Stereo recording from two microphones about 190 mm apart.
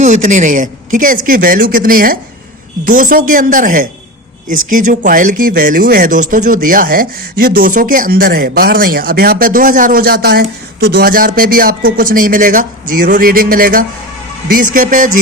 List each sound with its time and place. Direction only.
0.0 s speech: 40° right (ahead or behind)